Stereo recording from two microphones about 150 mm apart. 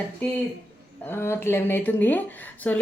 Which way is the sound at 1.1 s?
15° left (ahead or behind).